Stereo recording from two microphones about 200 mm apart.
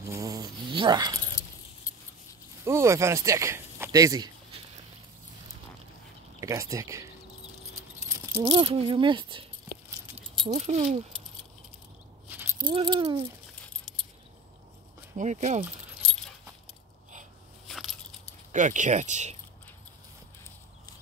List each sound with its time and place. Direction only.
0.1 s a sound: 15° right (ahead or behind)
2.6 s speech: 15° right (ahead or behind)
6.4 s speech: 15° right (ahead or behind)
8.4 s speech: 20° right (ahead or behind)
10.5 s speech: 35° right (ahead or behind)
12.3 s keys jangling: 10° right (ahead or behind)
12.6 s speech: 25° right (ahead or behind)
13.9 s keys jangling: centre (ahead or behind)
15.1 s speech: 35° right (ahead or behind)
17.6 s biting: centre (ahead or behind)
18.5 s speech: 40° right (ahead or behind)